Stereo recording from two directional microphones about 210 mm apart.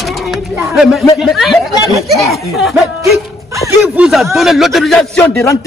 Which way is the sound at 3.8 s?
5° right (ahead or behind).